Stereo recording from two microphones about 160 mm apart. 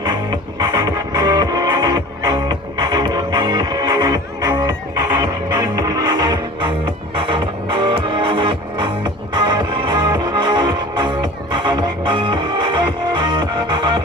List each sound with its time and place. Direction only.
0.0 s music: 25° right (ahead or behind)